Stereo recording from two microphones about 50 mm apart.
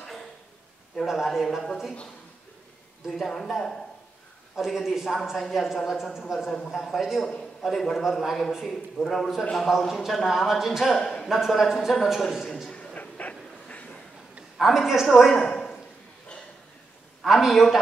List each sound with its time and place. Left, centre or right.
1.0 s a man's voice: centre
3.1 s a man's voice: centre
7.3 s a man's voice: centre
8.9 s a man's voice: centre
9.6 s a man's voice: centre
11.0 s a man's voice: centre
11.2 s a man's voice: centre
12.7 s a sound: left
14.6 s a man's voice: centre
15.3 s a sound: centre
17.2 s a man's voice: centre